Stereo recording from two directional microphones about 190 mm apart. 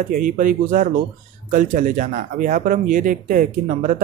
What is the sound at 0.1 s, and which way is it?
Speech, 45° right (ahead or behind).